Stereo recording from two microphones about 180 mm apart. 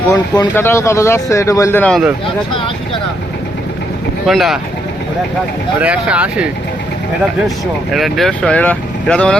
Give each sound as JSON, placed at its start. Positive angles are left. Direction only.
{"t": 0.1, "sound": "speech", "side_deg": 15}
{"t": 4.3, "sound": "speech", "side_deg": 0}
{"t": 5.8, "sound": "speech", "side_deg": -5}
{"t": 7.9, "sound": "speech", "side_deg": 0}